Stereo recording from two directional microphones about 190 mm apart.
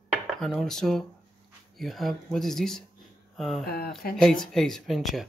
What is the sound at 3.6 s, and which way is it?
Speech, 55° left (ahead or behind).